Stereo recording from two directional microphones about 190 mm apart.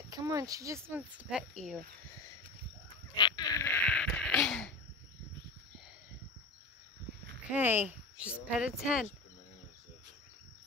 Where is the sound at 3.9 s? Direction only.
5° left (ahead or behind).